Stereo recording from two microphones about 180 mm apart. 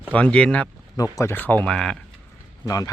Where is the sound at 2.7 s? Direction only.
20° left (ahead or behind).